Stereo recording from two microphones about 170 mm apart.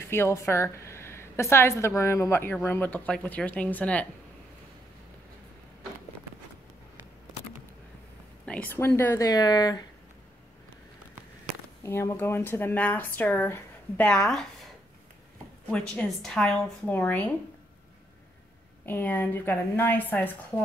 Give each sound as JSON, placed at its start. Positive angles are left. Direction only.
{"t": 0.1, "sound": "a woman's voice", "side_deg": 15}
{"t": 8.5, "sound": "a woman's voice", "side_deg": 10}
{"t": 11.8, "sound": "a woman's voice", "side_deg": 15}
{"t": 15.7, "sound": "speech", "side_deg": 5}
{"t": 18.9, "sound": "a woman's voice", "side_deg": 10}